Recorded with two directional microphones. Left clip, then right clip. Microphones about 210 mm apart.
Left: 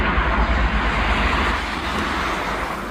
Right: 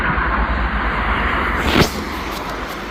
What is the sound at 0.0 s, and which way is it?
Vehicle, 20° right (ahead or behind).